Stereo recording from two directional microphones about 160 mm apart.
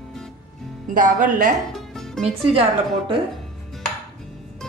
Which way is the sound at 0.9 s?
55° right (ahead or behind).